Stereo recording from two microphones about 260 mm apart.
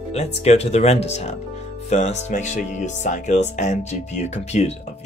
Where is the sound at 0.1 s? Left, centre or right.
Left.